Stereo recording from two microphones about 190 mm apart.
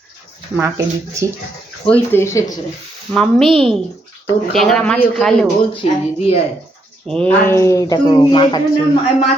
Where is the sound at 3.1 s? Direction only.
5° left (ahead or behind).